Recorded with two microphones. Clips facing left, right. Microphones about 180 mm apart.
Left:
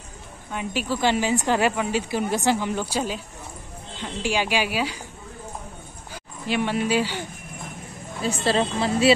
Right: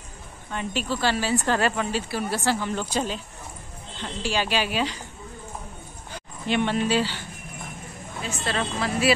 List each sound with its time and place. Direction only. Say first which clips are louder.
0.5 s speech: left 1 dB; 10° left (ahead or behind)
6.1 s speech: right 1 dB; 5° left (ahead or behind)
8.2 s a woman's voice: left 6 dB; 35° left (ahead or behind)